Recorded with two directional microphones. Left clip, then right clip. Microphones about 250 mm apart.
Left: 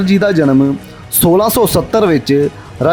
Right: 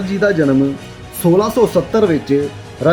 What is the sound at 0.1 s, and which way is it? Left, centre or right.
Speech, left.